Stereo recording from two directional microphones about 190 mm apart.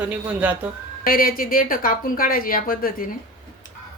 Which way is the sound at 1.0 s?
50° left (ahead or behind).